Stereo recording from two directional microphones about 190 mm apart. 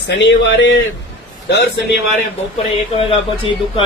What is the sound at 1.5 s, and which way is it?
Speech, 60° left (ahead or behind).